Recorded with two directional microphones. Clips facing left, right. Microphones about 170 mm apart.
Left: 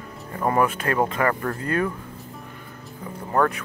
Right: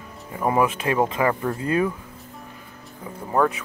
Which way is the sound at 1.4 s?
10° right (ahead or behind).